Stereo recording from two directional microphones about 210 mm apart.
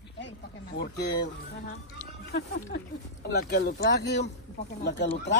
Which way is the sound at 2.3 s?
50° left (ahead or behind).